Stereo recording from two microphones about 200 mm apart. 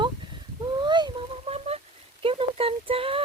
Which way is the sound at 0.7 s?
20° right (ahead or behind).